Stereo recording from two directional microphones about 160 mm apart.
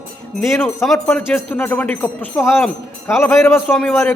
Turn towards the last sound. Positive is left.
turn(degrees=5)  # may be behind; listen again after turning